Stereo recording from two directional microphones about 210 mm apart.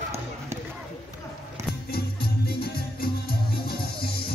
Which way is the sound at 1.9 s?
50° left (ahead or behind).